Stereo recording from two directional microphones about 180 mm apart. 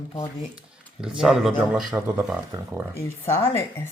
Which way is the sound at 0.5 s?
5° right (ahead or behind).